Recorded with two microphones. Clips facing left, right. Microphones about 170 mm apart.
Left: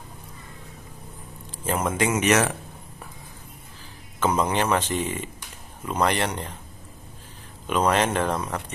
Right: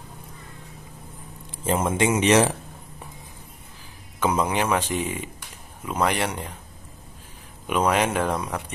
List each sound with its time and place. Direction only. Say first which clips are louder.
1.7 s speech: right 2 dB; 25° right (ahead or behind)
4.2 s speech: even; 10° right (ahead or behind)
7.6 s speech: even; 10° right (ahead or behind)